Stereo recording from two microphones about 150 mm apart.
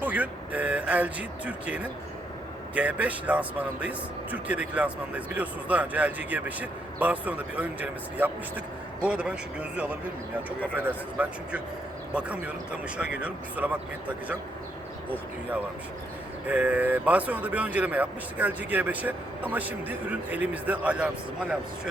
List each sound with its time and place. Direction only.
0.0 s speech: 10° right (ahead or behind)
16.5 s speech: 10° right (ahead or behind)